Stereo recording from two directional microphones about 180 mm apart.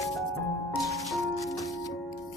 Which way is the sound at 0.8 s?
Centre (ahead or behind).